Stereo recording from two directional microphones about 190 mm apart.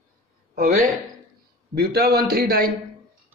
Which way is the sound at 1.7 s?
55° right (ahead or behind).